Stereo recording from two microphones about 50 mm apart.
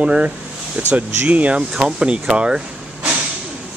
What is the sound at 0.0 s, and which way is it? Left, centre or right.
Speech, right.